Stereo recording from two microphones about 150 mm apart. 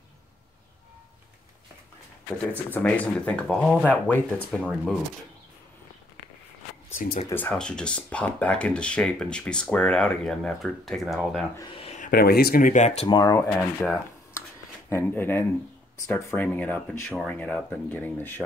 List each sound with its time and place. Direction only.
2.7 s speech: 10° left (ahead or behind)
7.2 s speech: 10° left (ahead or behind)
11.8 s a sound: 50° left (ahead or behind)
12.1 s speech: 85° left; by 13.0 s 50° left (ahead or behind)
13.0 s speech: 30° left (ahead or behind)
13.4 s speech: 10° left (ahead or behind)